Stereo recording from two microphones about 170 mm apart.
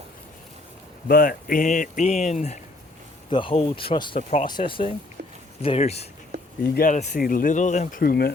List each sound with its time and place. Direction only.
1.0 s speech: 60° left (ahead or behind); by 2.6 s 40° left (ahead or behind)
3.2 s speech: 30° left (ahead or behind); by 8.3 s 60° left (ahead or behind)